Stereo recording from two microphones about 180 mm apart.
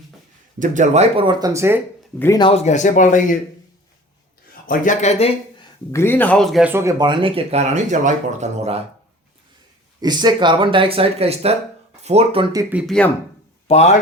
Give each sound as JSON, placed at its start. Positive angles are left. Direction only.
{"t": 0.6, "sound": "speech", "side_deg": -45}
{"t": 2.1, "sound": "speech", "side_deg": 15}
{"t": 2.4, "sound": "speech", "side_deg": 35}
{"t": 4.6, "sound": "speech", "side_deg": 50}
{"t": 5.9, "sound": "speech", "side_deg": 15}
{"t": 7.0, "sound": "speech", "side_deg": -25}
{"t": 10.0, "sound": "speech", "side_deg": -25}
{"t": 12.7, "sound": "speech", "side_deg": 0}
{"t": 13.7, "sound": "speech", "side_deg": 35}